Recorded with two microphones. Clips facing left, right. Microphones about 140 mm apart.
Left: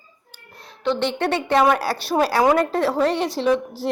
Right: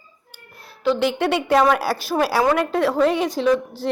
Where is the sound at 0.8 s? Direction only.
5° right (ahead or behind).